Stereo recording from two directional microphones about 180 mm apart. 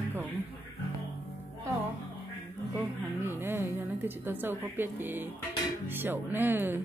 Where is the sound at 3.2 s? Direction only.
10° right (ahead or behind).